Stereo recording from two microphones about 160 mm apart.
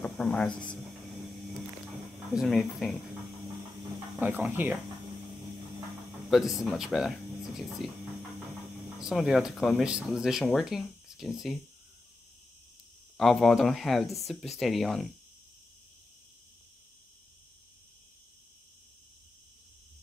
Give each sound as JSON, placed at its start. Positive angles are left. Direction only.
{"t": 0.0, "sound": "speech", "side_deg": 5}
{"t": 2.3, "sound": "speech", "side_deg": 0}
{"t": 4.2, "sound": "speech", "side_deg": -10}
{"t": 6.3, "sound": "speech", "side_deg": 0}
{"t": 9.0, "sound": "speech", "side_deg": 0}
{"t": 13.2, "sound": "speech", "side_deg": 0}